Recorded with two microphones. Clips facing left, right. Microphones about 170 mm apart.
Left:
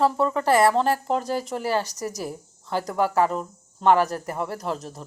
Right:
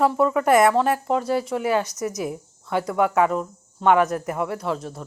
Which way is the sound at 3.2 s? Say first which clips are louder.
Right 2 dB; centre (ahead or behind).